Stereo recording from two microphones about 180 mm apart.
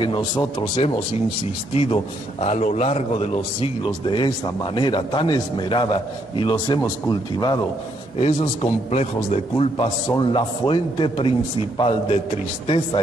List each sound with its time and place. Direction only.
0.6 s a man's voice: 35° left (ahead or behind)
8.2 s a man's voice: 35° left (ahead or behind)
12.6 s a man's voice: 30° left (ahead or behind)